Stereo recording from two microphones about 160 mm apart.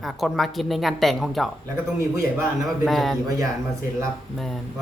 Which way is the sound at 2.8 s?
Centre (ahead or behind).